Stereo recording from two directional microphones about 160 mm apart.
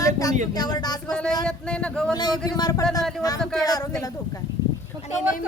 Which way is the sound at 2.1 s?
25° left (ahead or behind).